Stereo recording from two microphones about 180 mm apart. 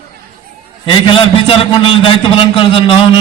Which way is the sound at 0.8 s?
25° left (ahead or behind).